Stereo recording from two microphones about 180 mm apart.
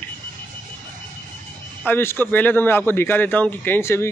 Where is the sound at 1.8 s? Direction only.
10° left (ahead or behind).